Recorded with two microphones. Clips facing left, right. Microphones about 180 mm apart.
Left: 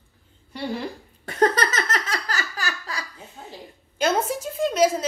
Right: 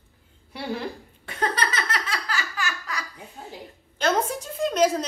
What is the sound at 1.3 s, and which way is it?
Laughter, 45° left (ahead or behind).